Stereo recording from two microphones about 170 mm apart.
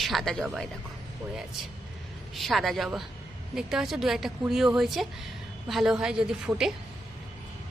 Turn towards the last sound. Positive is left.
turn(degrees=-5)  # may be behind; listen again after turning